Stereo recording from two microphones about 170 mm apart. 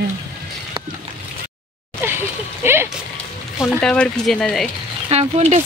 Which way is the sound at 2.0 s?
15° right (ahead or behind).